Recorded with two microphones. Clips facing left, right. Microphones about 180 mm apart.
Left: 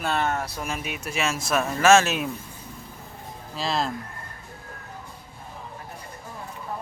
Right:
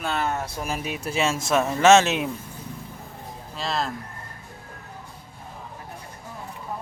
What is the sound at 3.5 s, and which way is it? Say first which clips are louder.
Speech: left 1 dB; centre (ahead or behind).